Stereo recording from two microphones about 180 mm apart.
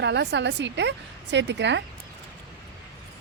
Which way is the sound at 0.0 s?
75° right (ahead or behind).